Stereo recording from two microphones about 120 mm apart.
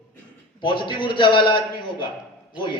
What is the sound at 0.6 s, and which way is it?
A man's voice, 40° left (ahead or behind).